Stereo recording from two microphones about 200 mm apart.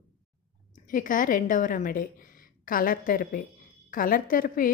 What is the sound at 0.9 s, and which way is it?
A woman's voice, 40° left (ahead or behind).